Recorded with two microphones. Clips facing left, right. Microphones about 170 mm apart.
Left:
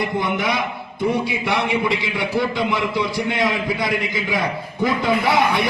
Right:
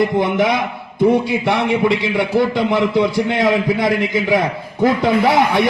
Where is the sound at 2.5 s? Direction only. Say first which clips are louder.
Right 6 dB; 65° right (ahead or behind).